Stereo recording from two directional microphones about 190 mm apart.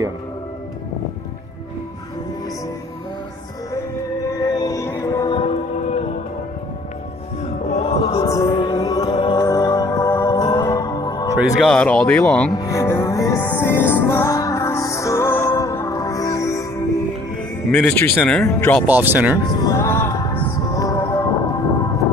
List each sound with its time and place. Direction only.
4.4 s music: 20° left (ahead or behind)
7.6 s music: 35° left (ahead or behind)
8.0 s chant: 30° left (ahead or behind)
8.3 s music: 15° left (ahead or behind)
11.3 s speech: 5° left (ahead or behind)
12.5 s music: 15° left (ahead or behind)
17.6 s speech: 5° left (ahead or behind)
18.9 s speech: 10° right (ahead or behind)
19.5 s music: 15° left (ahead or behind)